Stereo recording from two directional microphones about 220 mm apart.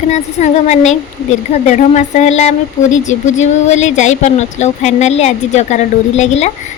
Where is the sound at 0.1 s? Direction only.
30° left (ahead or behind).